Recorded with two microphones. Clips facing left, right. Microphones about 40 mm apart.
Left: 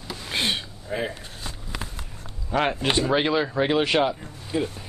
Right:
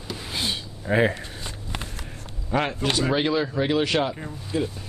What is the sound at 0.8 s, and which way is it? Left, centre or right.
Speech, right.